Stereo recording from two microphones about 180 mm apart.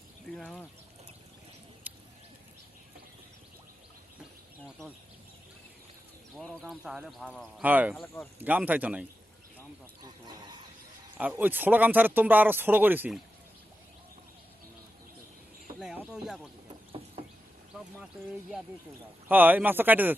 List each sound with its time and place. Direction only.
0.3 s speech: 5° left (ahead or behind)
1.9 s a sound: 10° right (ahead or behind)
6.3 s speech: 5° left (ahead or behind)
7.6 s speech: 10° right (ahead or behind)
8.0 s speech: 10° left (ahead or behind)
8.4 s speech: 10° right (ahead or behind)
10.0 s a sound: 20° right (ahead or behind)
11.2 s speech: 10° right (ahead or behind)
15.8 s a sound: 5° right (ahead or behind)
16.1 s speech: 5° right (ahead or behind)
19.3 s speech: 10° right (ahead or behind)